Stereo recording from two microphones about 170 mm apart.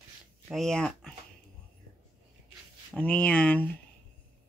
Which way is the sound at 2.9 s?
10° left (ahead or behind).